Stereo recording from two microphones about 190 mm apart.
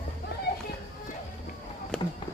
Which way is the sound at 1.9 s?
5° left (ahead or behind).